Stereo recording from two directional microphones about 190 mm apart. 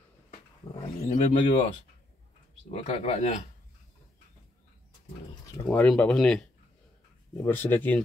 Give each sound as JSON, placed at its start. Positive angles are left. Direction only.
{"t": 0.3, "sound": "a sound", "side_deg": 35}
{"t": 2.7, "sound": "speech", "side_deg": 35}
{"t": 5.7, "sound": "speech", "side_deg": 5}